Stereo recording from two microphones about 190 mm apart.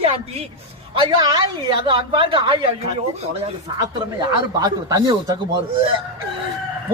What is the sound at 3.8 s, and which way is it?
Speech, 20° right (ahead or behind).